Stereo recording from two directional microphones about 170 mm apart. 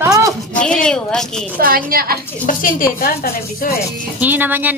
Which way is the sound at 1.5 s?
60° right (ahead or behind).